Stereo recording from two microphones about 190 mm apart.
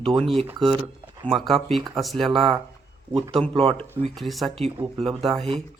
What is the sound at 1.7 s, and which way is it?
Speech, centre (ahead or behind).